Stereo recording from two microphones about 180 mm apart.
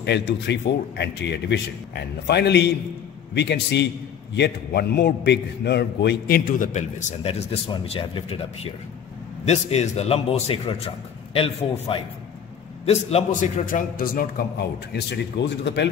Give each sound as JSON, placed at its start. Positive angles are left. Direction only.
{"t": 0.0, "sound": "a man's voice", "side_deg": 70}
{"t": 9.4, "sound": "a man's voice", "side_deg": 35}
{"t": 14.9, "sound": "a man's voice", "side_deg": 70}